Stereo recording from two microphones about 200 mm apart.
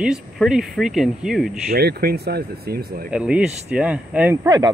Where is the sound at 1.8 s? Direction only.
50° right (ahead or behind).